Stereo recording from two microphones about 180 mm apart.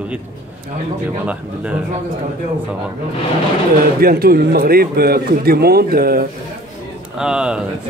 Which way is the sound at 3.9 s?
55° right (ahead or behind).